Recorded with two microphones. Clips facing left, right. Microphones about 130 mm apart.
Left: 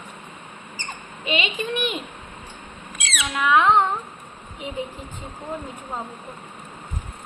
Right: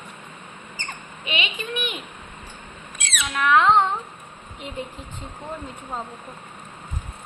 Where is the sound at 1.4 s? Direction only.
35° left (ahead or behind).